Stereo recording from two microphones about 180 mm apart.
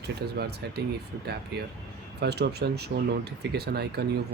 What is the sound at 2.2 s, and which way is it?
Speech, 65° right (ahead or behind).